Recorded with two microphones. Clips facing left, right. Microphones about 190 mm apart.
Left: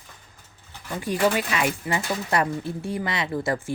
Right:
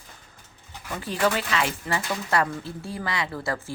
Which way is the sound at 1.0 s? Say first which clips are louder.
Left 2 dB; 15° left (ahead or behind).